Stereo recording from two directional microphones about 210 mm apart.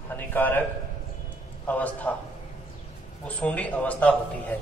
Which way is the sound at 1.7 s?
5° left (ahead or behind).